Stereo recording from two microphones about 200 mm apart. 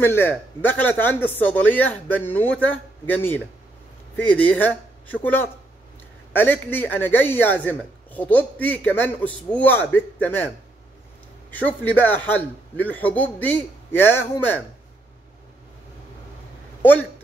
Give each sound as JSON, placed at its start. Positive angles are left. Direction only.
{"t": 0.0, "sound": "speech", "side_deg": 10}
{"t": 11.5, "sound": "speech", "side_deg": 10}